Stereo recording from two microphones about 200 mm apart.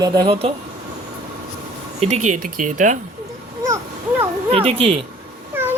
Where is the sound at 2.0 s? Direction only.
35° right (ahead or behind).